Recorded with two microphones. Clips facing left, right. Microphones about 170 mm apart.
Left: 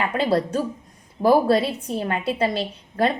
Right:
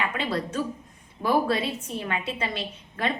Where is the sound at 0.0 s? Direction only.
35° left (ahead or behind).